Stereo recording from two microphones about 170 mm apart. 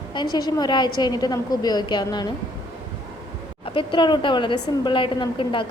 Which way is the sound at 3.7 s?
30° left (ahead or behind).